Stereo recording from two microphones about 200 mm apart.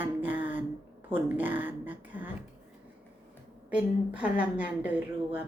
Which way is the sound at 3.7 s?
5° right (ahead or behind).